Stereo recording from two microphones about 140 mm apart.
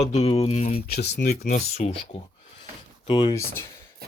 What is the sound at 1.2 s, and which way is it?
Speech, 90° left.